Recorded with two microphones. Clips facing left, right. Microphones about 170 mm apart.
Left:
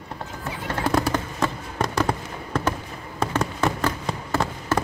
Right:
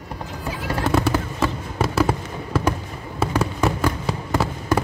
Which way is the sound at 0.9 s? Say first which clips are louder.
Right 3 dB; 5° right (ahead or behind).